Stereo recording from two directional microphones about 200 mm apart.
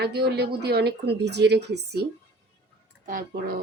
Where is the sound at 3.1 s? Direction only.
45° right (ahead or behind).